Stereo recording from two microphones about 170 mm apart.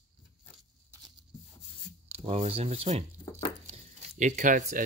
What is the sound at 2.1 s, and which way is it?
Speech, 35° right (ahead or behind).